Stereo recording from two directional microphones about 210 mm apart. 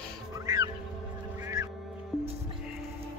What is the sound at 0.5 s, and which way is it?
Fowl, 15° right (ahead or behind).